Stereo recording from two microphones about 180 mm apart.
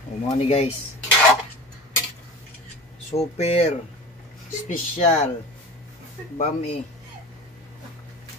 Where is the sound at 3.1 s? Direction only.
35° left (ahead or behind).